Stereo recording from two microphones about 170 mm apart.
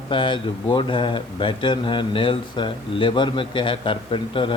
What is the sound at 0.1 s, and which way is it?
Speech, 30° left (ahead or behind).